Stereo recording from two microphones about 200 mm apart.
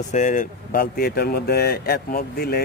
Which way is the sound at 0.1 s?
40° left (ahead or behind).